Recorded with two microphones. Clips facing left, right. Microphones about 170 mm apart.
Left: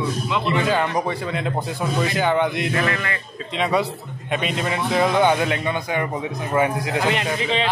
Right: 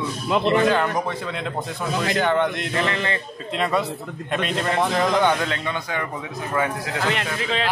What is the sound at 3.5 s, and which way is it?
A man's voice, centre (ahead or behind).